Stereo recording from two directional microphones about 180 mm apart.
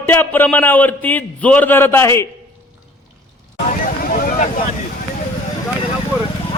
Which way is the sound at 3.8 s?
50° left (ahead or behind).